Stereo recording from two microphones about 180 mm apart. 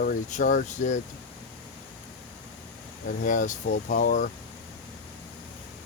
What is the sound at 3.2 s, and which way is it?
Speech, 45° left (ahead or behind).